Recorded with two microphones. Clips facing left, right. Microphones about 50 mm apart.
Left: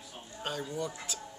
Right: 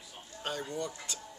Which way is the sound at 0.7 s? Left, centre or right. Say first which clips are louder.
Left 1 dB; centre.